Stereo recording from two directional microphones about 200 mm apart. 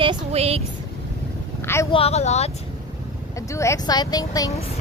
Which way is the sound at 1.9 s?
30° left (ahead or behind).